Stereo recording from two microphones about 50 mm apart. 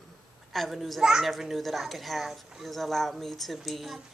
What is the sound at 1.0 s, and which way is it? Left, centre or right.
A child's voice, centre.